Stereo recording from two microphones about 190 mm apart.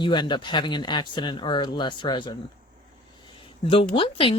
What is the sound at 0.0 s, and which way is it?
Speech, 25° left (ahead or behind).